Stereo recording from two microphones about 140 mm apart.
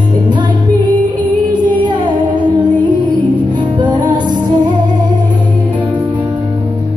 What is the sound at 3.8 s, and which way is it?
Music, 30° right (ahead or behind).